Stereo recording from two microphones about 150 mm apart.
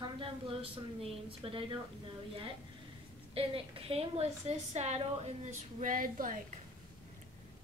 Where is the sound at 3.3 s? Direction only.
40° right (ahead or behind).